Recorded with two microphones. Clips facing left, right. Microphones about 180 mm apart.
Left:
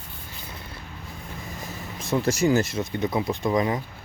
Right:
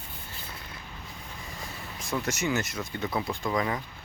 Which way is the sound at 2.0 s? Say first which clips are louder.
Left 8 dB; 25° left (ahead or behind).